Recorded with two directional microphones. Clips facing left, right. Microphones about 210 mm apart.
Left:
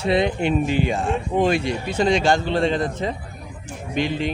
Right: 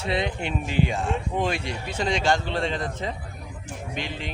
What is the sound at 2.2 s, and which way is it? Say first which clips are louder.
Speech: left 5 dB; 35° left (ahead or behind).